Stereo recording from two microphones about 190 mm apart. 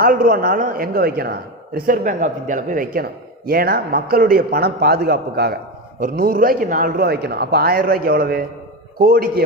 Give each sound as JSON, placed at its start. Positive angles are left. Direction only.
{"t": 0.0, "sound": "speech", "side_deg": -45}